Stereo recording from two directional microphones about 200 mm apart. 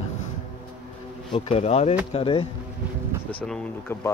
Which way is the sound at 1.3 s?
30° left (ahead or behind).